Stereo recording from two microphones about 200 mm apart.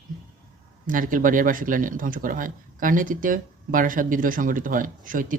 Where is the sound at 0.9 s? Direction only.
45° right (ahead or behind).